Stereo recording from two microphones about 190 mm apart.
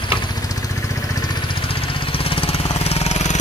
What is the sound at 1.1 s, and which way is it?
Jackhammer, 25° left (ahead or behind).